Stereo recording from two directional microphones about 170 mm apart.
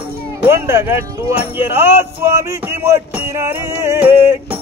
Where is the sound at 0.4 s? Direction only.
15° right (ahead or behind).